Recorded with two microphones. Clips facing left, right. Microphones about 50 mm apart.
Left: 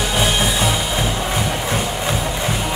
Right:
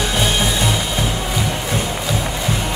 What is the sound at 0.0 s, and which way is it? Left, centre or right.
Music, centre.